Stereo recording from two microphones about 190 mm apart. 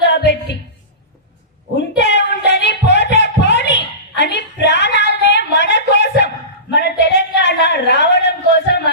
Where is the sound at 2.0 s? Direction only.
65° left (ahead or behind).